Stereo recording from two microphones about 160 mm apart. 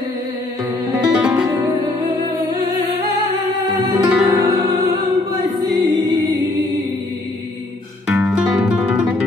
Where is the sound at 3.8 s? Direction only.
25° right (ahead or behind).